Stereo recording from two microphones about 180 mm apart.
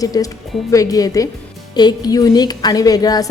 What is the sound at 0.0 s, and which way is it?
A woman's voice, 20° left (ahead or behind).